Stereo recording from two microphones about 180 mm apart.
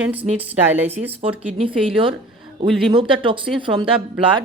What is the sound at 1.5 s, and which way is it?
Speech, 30° right (ahead or behind).